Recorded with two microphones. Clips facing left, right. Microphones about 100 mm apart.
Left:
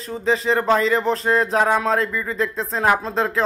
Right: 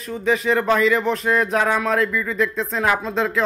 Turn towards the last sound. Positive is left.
turn(degrees=35)  # may be behind; listen again after turning